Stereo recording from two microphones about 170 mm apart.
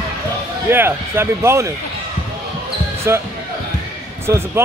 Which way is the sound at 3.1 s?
15° right (ahead or behind).